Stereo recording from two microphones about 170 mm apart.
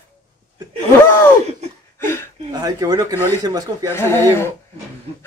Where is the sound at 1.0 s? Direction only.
10° left (ahead or behind).